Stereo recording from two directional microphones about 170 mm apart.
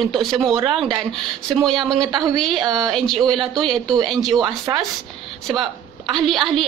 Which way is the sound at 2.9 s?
5° left (ahead or behind).